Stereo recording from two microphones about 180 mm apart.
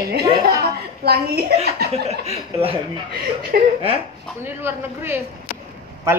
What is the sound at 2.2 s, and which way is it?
Speech, 35° right (ahead or behind).